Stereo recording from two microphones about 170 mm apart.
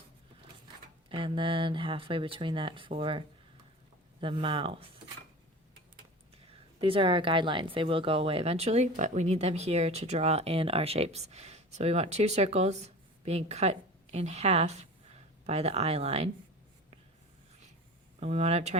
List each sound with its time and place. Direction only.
1.1 s speech: 30° right (ahead or behind)
6.3 s speech: 30° right (ahead or behind)
18.2 s speech: 40° right (ahead or behind)